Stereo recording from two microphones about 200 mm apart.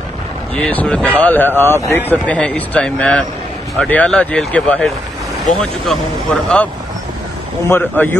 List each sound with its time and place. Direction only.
0.6 s speech: 5° left (ahead or behind)